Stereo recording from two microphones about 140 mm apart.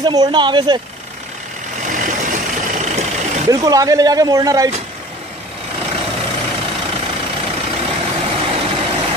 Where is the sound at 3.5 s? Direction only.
25° right (ahead or behind).